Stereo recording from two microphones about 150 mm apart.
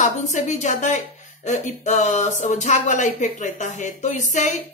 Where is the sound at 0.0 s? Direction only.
55° left (ahead or behind).